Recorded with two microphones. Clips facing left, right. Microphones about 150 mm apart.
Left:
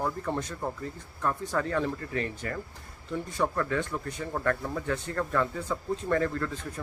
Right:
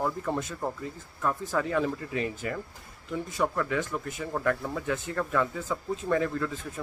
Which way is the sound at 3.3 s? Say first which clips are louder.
Even; centre (ahead or behind).